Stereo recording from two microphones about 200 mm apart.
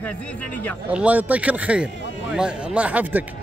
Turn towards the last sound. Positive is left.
turn(degrees=-10)  # may be behind; listen again after turning